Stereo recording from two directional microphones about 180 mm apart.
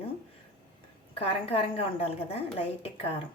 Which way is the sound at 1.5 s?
35° left (ahead or behind).